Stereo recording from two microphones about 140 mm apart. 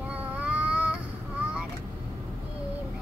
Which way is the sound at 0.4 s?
10° right (ahead or behind).